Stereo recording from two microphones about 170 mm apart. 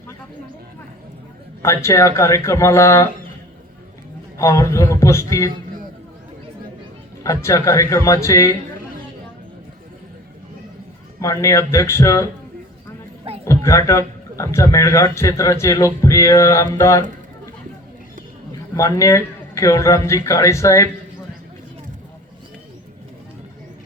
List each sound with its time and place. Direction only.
1.6 s a man's voice: 15° left (ahead or behind)
4.4 s a man's voice: 20° left (ahead or behind)
7.3 s speech: 20° left (ahead or behind)
11.2 s a man's voice: 20° left (ahead or behind)
13.4 s a man's voice: 15° left (ahead or behind)
18.8 s speech: 20° left (ahead or behind)